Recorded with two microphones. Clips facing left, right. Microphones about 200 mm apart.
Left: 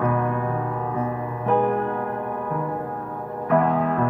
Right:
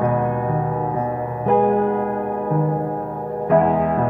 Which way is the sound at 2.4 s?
35° right (ahead or behind).